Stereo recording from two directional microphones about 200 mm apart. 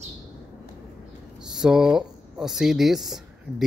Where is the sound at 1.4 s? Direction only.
5° right (ahead or behind).